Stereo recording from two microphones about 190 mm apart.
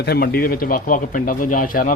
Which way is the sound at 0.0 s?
55° left (ahead or behind).